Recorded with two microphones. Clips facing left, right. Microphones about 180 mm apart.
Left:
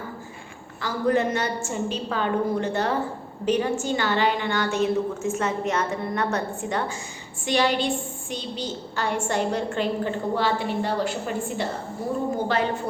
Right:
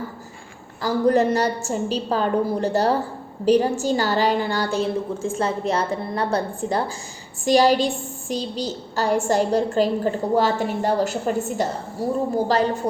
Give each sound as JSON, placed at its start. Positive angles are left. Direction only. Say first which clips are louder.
{"t": 0.8, "sound": "a woman's voice", "louder": "right 5 dB", "side_deg": -40}